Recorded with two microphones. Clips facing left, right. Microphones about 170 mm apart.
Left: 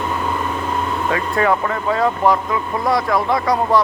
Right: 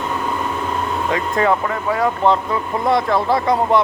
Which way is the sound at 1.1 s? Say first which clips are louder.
Even; 25° right (ahead or behind).